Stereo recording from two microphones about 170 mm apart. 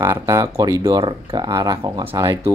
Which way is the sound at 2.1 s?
20° right (ahead or behind).